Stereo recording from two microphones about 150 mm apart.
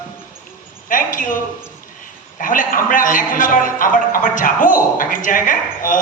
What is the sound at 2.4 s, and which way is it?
A man's voice, 65° left (ahead or behind).